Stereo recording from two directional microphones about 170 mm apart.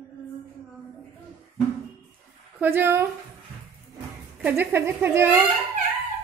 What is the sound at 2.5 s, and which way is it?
Speech, 15° right (ahead or behind).